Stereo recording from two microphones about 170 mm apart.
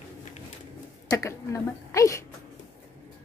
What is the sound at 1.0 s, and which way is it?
Speech, 20° left (ahead or behind).